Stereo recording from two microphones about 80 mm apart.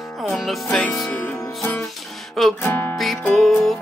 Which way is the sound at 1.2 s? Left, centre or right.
Left.